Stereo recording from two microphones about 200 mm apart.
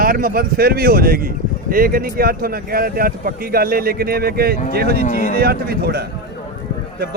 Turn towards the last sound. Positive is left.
turn(degrees=-50)  # may be behind; listen again after turning